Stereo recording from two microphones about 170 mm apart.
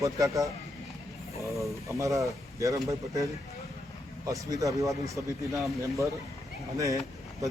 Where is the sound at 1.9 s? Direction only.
20° right (ahead or behind).